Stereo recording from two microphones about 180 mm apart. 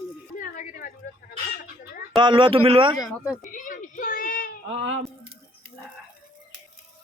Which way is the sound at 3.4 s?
45° left (ahead or behind).